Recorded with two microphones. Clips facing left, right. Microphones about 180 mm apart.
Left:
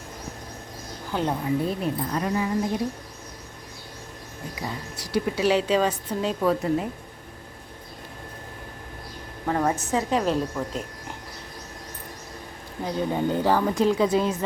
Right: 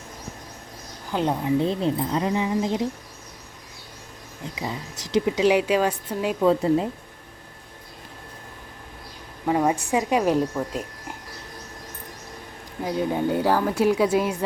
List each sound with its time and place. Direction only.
1.1 s a woman's voice: 20° right (ahead or behind)
4.5 s a woman's voice: 20° right (ahead or behind)
6.4 s a woman's voice: 25° right (ahead or behind)
9.5 s a woman's voice: 10° right (ahead or behind)
12.8 s a woman's voice: 5° right (ahead or behind)